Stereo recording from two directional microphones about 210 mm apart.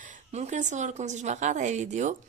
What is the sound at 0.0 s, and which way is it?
Speech, 35° right (ahead or behind).